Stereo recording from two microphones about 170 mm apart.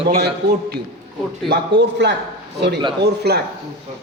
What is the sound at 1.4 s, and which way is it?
Speech, 80° right.